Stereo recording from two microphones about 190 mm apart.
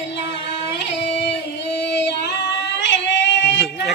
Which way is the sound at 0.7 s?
65° left (ahead or behind).